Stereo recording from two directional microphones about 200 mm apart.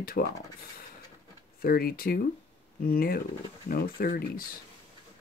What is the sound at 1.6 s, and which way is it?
Speech, 50° left (ahead or behind).